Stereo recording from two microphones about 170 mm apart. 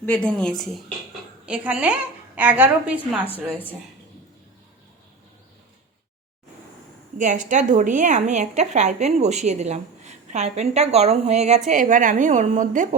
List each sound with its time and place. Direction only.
0.0 s a woman's voice: 10° left (ahead or behind); by 3.2 s 5° right (ahead or behind)
7.2 s a woman's voice: 50° right (ahead or behind)